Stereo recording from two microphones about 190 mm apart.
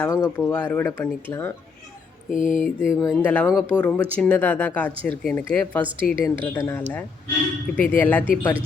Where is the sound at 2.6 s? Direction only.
5° right (ahead or behind).